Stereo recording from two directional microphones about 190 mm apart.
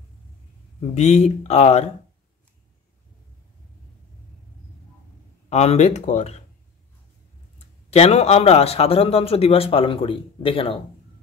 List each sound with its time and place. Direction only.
0.7 s a man's voice: 35° left (ahead or behind)
5.5 s a man's voice: 35° left (ahead or behind)
7.9 s a man's voice: 35° left (ahead or behind)